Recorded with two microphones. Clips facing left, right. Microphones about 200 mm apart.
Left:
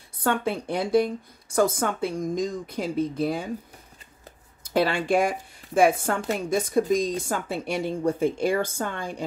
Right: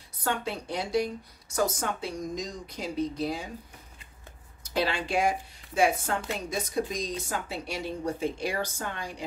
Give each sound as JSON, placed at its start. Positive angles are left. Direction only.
{"t": 0.2, "sound": "a woman's voice", "side_deg": 55}
{"t": 4.7, "sound": "a woman's voice", "side_deg": 50}